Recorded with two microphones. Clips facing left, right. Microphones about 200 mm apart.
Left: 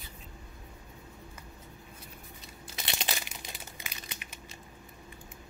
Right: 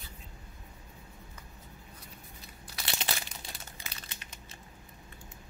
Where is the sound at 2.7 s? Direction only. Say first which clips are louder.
Even; 20° left (ahead or behind).